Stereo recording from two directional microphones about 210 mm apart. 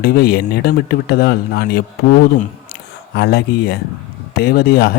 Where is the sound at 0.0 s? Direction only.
50° left (ahead or behind).